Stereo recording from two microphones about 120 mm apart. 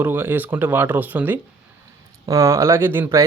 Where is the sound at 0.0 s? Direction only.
15° right (ahead or behind).